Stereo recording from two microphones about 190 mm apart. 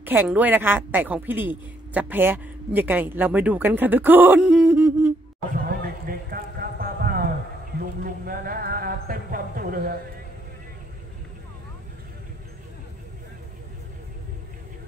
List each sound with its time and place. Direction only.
0.0 s a woman's voice: 10° right (ahead or behind)
5.8 s clip-clop: 50° right (ahead or behind)
8.0 s a sound: 50° right (ahead or behind)